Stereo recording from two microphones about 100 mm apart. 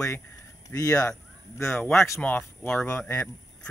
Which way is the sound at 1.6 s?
10° left (ahead or behind).